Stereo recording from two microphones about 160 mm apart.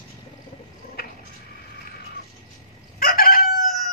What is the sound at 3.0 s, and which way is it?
Chicken, 65° left (ahead or behind).